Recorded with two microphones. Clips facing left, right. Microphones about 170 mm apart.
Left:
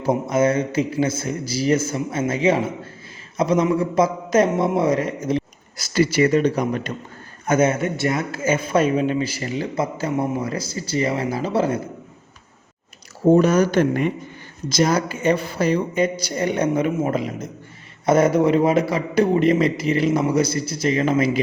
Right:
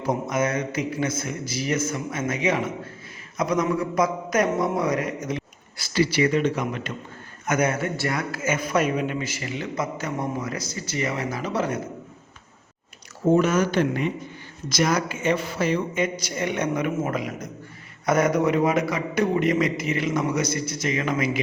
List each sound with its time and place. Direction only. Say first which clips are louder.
0.0 s a man's voice: left 5 dB; 30° left (ahead or behind)
7.4 s a man's voice: left 5 dB; 25° left (ahead or behind)
13.3 s speech: left 4 dB; 35° left (ahead or behind)
14.7 s a man's voice: left 4 dB; 30° left (ahead or behind)